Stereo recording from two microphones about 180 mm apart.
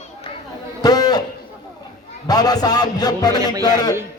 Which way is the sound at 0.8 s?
20° left (ahead or behind).